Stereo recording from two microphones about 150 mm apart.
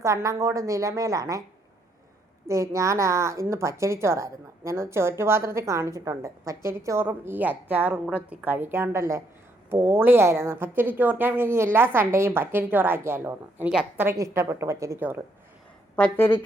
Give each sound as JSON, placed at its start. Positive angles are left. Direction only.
{"t": 0.0, "sound": "a woman's voice", "side_deg": -20}
{"t": 2.5, "sound": "a woman's voice", "side_deg": -20}
{"t": 16.0, "sound": "a woman's voice", "side_deg": 10}